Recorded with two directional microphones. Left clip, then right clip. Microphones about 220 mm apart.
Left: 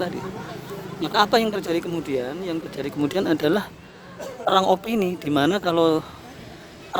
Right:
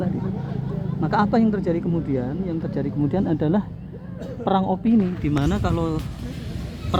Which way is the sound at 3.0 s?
45° left (ahead or behind).